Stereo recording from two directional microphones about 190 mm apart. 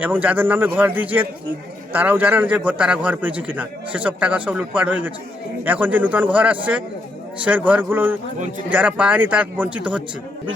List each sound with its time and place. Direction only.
0.0 s a man's voice: 10° right (ahead or behind)